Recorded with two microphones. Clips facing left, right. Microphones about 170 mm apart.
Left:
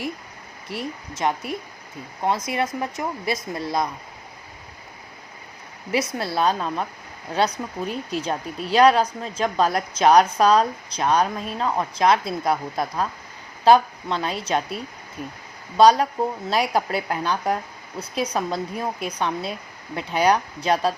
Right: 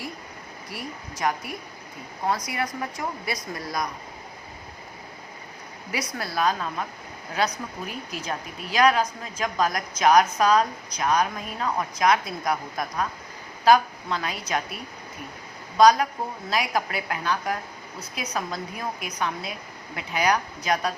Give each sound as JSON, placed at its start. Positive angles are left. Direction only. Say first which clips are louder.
{"t": 0.7, "sound": "speech", "louder": "left 6 dB", "side_deg": 25}
{"t": 5.9, "sound": "speech", "louder": "left 6 dB", "side_deg": 25}
{"t": 15.8, "sound": "speech", "louder": "left 2 dB", "side_deg": 30}